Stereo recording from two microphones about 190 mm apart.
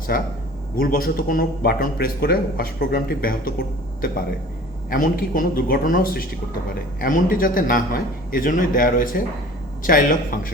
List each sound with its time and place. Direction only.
0.1 s speech: 55° left (ahead or behind)
4.9 s speech: 45° left (ahead or behind)